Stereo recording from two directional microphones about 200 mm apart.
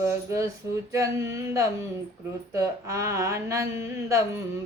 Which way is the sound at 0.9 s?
15° right (ahead or behind).